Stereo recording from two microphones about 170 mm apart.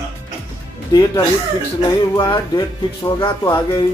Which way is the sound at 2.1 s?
25° left (ahead or behind).